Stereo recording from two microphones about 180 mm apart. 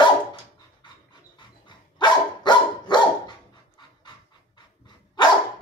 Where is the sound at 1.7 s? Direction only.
25° left (ahead or behind).